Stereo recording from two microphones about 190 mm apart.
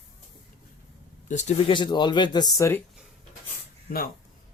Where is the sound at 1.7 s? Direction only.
25° left (ahead or behind).